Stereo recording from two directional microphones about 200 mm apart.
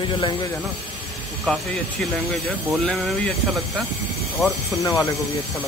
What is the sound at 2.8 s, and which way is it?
Speech, 5° left (ahead or behind).